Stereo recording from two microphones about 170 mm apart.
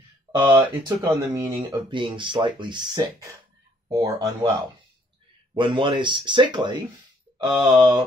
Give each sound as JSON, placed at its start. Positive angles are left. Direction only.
{"t": 0.4, "sound": "speech", "side_deg": -25}
{"t": 5.5, "sound": "speech", "side_deg": -30}
{"t": 7.6, "sound": "mantra", "side_deg": -10}